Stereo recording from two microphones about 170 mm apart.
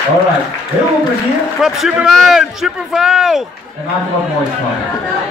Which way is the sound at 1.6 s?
5° right (ahead or behind).